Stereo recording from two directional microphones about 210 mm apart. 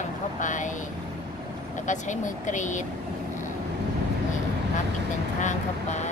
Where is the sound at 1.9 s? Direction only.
35° left (ahead or behind).